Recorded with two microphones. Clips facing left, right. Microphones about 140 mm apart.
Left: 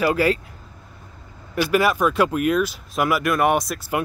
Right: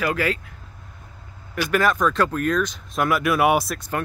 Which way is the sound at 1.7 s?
10° left (ahead or behind).